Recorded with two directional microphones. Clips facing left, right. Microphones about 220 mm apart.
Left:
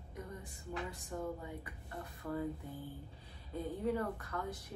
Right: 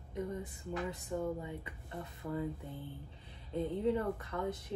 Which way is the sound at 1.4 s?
20° right (ahead or behind).